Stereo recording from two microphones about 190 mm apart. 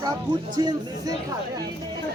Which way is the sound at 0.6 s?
20° right (ahead or behind).